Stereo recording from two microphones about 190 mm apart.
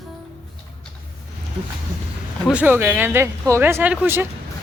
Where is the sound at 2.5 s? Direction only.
10° right (ahead or behind).